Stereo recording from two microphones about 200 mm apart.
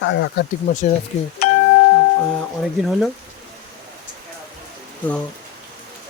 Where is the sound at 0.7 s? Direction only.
40° left (ahead or behind).